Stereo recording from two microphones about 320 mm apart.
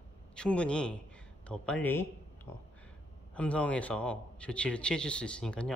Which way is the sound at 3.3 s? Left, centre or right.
Centre.